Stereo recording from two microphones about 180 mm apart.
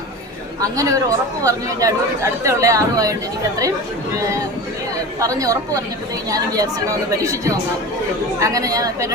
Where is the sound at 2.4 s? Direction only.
15° right (ahead or behind).